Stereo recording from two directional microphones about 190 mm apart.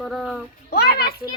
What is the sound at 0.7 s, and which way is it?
Speech, 55° left (ahead or behind).